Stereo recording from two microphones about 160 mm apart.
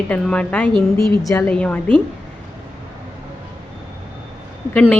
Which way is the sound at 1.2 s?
20° left (ahead or behind).